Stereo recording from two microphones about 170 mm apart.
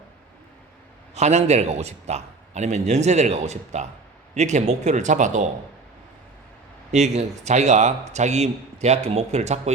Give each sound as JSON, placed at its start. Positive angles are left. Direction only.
{"t": 1.1, "sound": "a man's voice", "side_deg": -40}
{"t": 6.9, "sound": "a man's voice", "side_deg": -40}